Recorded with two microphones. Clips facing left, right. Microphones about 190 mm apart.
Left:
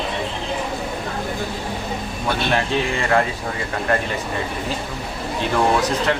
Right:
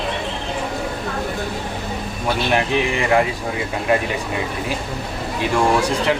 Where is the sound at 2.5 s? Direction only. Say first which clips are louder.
Right 3 dB; 15° right (ahead or behind).